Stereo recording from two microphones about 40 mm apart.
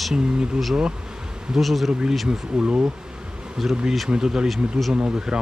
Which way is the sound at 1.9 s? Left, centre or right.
Right.